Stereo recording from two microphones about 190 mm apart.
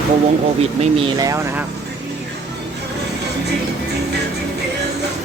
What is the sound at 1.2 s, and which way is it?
Speech, 15° right (ahead or behind).